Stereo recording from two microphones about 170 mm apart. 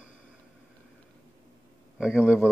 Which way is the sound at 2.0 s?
5° right (ahead or behind).